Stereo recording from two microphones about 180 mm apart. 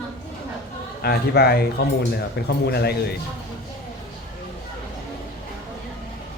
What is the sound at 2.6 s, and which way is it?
Speech, 60° left (ahead or behind).